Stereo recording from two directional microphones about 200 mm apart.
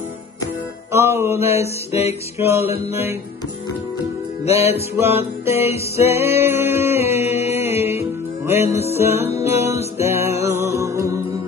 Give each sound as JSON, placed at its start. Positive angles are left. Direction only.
{"t": 0.9, "sound": "music", "side_deg": -15}
{"t": 1.9, "sound": "music", "side_deg": 30}
{"t": 2.3, "sound": "music", "side_deg": -15}
{"t": 4.9, "sound": "music", "side_deg": -10}